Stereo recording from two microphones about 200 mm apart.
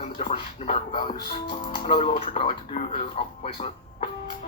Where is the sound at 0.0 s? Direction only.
30° left (ahead or behind).